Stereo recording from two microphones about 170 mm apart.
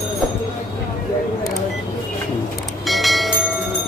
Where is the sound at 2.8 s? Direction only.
Centre (ahead or behind).